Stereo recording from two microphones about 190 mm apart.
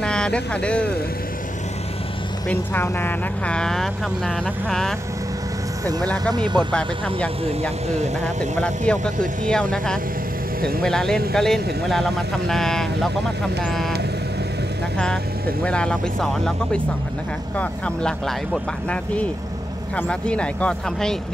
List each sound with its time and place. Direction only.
0.0 s speech: 5° left (ahead or behind)
2.4 s speech: 10° left (ahead or behind)
6.3 s speech: 25° right (ahead or behind)
8.5 s speech: 5° left (ahead or behind)
15.6 s speech: 5° left (ahead or behind)